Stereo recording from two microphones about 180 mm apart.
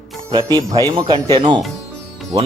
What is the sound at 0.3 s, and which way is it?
Speech, 20° right (ahead or behind).